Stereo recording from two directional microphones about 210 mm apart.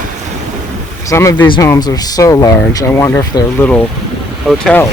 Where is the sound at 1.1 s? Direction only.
15° left (ahead or behind).